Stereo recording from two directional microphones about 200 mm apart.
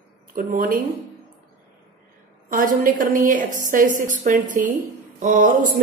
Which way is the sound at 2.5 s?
45° right (ahead or behind).